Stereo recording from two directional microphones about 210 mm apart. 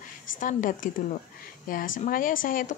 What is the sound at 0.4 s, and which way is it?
A woman's voice, 40° left (ahead or behind).